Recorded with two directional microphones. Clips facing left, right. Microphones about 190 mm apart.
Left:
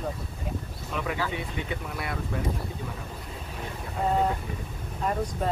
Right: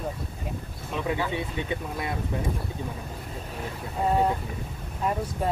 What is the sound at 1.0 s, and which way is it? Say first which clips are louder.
Speech: right 4 dB; 20° right (ahead or behind).